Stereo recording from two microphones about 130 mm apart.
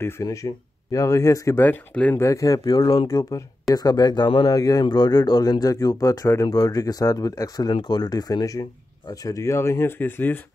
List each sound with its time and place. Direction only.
0.0 s speech: 25° left (ahead or behind)
1.6 s speech: 15° left (ahead or behind)
2.2 s speech: 25° left (ahead or behind)